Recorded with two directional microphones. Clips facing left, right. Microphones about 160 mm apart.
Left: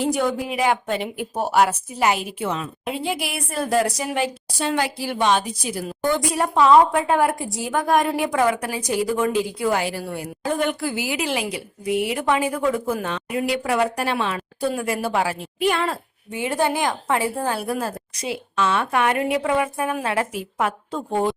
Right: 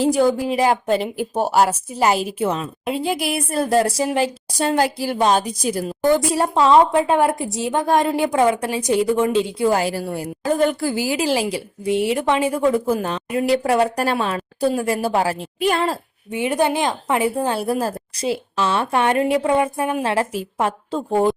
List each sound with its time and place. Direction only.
0.0 s a woman's voice: 35° right (ahead or behind)
6.2 s a woman's voice: 30° right (ahead or behind)
16.3 s a woman's voice: 20° right (ahead or behind)